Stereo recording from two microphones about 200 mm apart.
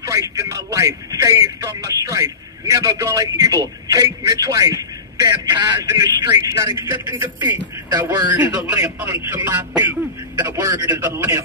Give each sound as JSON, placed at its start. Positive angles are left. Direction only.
{"t": 0.0, "sound": "speech", "side_deg": -15}